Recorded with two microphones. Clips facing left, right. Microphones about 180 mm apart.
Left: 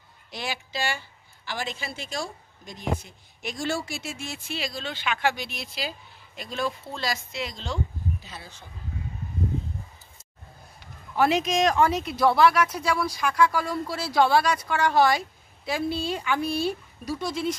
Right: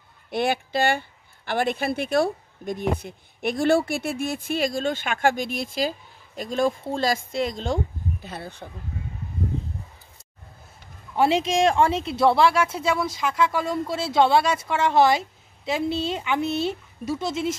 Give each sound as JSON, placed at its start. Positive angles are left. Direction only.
{"t": 0.3, "sound": "speech", "side_deg": -55}
{"t": 11.1, "sound": "speech", "side_deg": -30}